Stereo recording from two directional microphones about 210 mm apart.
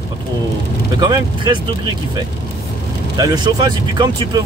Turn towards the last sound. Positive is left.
turn(degrees=-20)  # may be behind; listen again after turning